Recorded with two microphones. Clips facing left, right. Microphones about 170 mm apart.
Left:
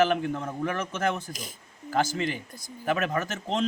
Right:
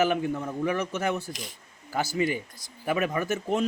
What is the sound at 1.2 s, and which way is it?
Speech, 45° left (ahead or behind).